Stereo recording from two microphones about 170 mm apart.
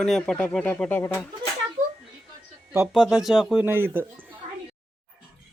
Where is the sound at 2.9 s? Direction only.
Centre (ahead or behind).